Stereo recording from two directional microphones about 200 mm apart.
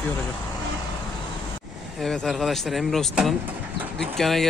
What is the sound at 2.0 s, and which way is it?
Speech, centre (ahead or behind).